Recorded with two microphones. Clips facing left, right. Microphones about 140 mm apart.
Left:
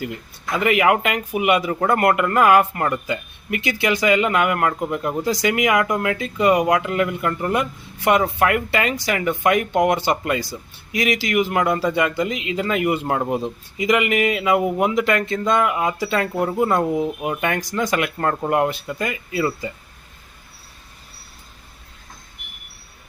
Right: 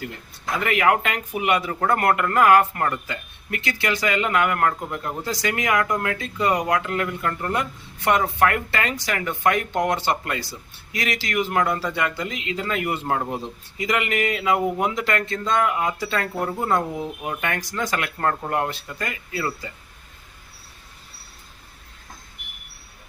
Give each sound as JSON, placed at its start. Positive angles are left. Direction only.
{"t": 0.6, "sound": "a man's voice", "side_deg": 15}